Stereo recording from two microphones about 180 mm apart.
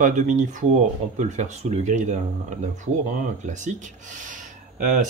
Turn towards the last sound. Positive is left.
turn(degrees=-45)  # may be behind; listen again after turning